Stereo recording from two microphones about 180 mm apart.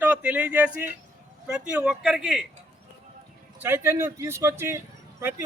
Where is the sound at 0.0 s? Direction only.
10° right (ahead or behind).